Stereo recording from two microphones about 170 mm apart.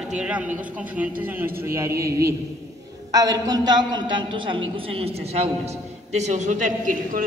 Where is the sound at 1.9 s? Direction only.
65° right (ahead or behind).